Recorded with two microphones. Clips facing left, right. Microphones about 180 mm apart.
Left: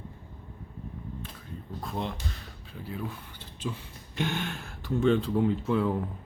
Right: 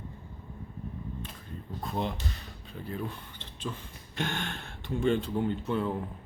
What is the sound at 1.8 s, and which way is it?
Speech, centre (ahead or behind).